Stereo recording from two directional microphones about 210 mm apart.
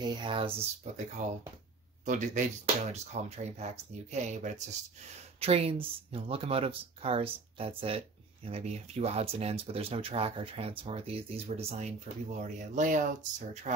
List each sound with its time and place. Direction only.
0.0 s speech: 20° right (ahead or behind)